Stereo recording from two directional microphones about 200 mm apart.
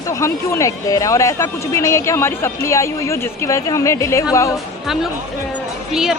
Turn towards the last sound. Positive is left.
turn(degrees=0)  # may be behind; listen again after turning